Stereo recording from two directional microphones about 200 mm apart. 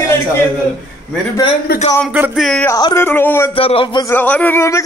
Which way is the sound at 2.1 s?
5° right (ahead or behind).